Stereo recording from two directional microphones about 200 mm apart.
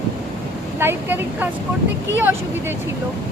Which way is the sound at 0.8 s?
10° right (ahead or behind).